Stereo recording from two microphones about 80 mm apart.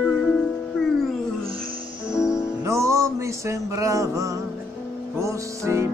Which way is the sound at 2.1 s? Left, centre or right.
Left.